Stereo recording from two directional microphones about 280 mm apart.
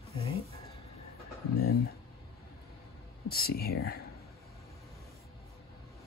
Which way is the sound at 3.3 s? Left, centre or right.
Left.